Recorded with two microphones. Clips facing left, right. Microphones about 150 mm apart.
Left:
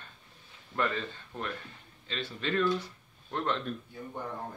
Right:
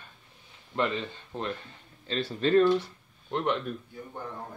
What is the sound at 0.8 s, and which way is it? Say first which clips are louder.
Speech: right 3 dB; 20° right (ahead or behind).